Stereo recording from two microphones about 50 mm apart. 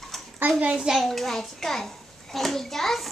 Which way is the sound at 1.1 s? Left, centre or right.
Centre.